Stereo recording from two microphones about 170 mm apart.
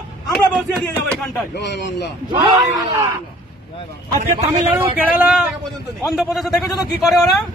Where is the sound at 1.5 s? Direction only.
90° left.